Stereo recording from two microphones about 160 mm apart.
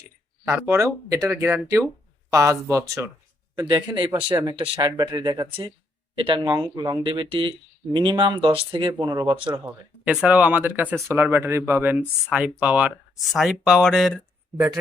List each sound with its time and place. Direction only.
0.4 s speech: 15° right (ahead or behind)
9.5 s speech: 10° right (ahead or behind)